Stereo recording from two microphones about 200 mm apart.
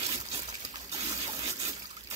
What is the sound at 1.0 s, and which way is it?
Gush, 25° right (ahead or behind).